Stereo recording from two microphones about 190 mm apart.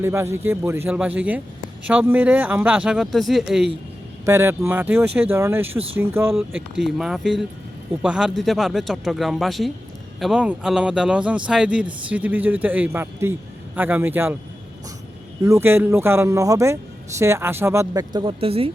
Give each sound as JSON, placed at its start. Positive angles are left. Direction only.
{"t": 0.0, "sound": "speech", "side_deg": -15}
{"t": 4.3, "sound": "speech", "side_deg": -15}
{"t": 15.4, "sound": "speech", "side_deg": -15}